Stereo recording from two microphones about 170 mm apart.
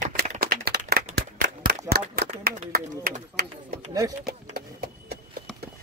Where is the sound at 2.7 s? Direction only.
55° right (ahead or behind).